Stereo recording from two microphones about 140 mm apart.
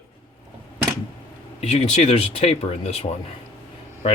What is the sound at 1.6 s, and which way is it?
Speech, 50° left (ahead or behind).